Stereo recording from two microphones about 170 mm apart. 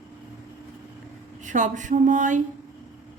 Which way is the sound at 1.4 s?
45° right (ahead or behind).